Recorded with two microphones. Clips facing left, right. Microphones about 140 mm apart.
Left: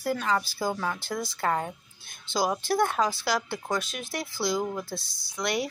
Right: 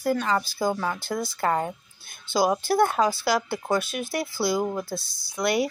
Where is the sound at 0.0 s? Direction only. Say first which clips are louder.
Right 3 dB; centre (ahead or behind).